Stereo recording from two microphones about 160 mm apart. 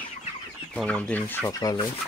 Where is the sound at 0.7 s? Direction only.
10° left (ahead or behind).